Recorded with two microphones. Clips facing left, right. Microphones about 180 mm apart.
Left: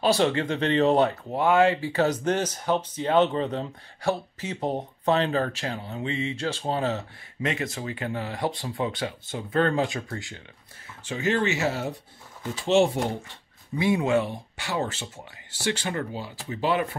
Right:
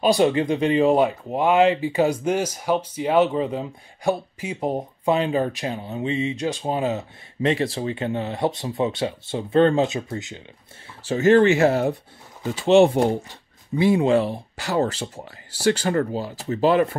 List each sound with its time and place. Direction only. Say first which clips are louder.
0.0 s speech: right 4 dB; 15° right (ahead or behind)
7.4 s speech: right 7 dB; 30° right (ahead or behind)
11.1 s speech: right 10 dB; 45° right (ahead or behind); by 13.0 s 60° right (ahead or behind)
13.7 s speech: right 5 dB; 30° right (ahead or behind)